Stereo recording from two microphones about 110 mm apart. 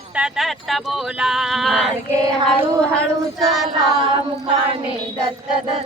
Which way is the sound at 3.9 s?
45° right (ahead or behind).